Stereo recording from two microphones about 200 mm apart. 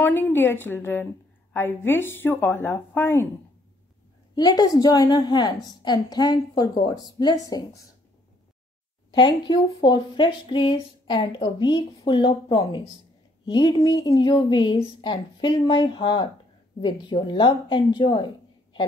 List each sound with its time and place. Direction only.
0.0 s a woman's voice: 10° left (ahead or behind)
4.4 s speech: 20° left (ahead or behind)
9.1 s speech: 20° left (ahead or behind)